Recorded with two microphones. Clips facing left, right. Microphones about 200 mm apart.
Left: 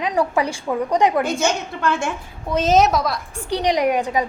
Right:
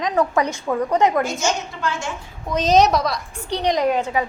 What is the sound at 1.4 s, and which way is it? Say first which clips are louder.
Speech: left 2 dB; 60° left (ahead or behind).